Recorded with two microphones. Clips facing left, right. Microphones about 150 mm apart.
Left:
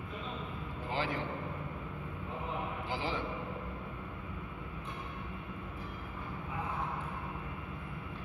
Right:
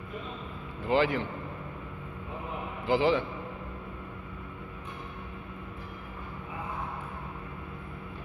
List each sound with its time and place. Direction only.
0.8 s a man's voice: 80° right
2.9 s a man's voice: 80° right